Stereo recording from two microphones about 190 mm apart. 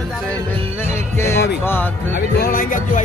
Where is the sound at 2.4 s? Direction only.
50° left (ahead or behind).